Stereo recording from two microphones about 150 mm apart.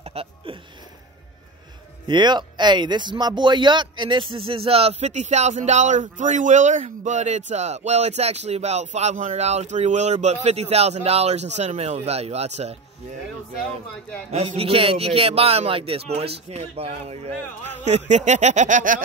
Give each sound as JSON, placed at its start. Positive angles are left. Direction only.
{"t": 0.1, "sound": "a sound", "side_deg": -40}
{"t": 2.0, "sound": "speech", "side_deg": -30}
{"t": 14.3, "sound": "speech", "side_deg": -40}